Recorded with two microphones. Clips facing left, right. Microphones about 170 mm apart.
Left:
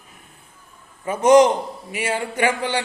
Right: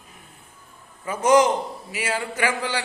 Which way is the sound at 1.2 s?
25° left (ahead or behind).